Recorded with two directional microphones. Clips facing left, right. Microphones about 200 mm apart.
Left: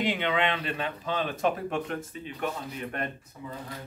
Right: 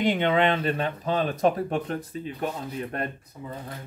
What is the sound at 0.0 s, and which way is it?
Speech, 45° right (ahead or behind).